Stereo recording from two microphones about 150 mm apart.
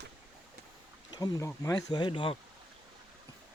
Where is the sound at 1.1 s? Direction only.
25° left (ahead or behind).